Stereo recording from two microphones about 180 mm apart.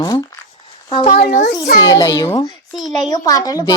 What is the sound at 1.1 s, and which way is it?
Speech, 40° left (ahead or behind).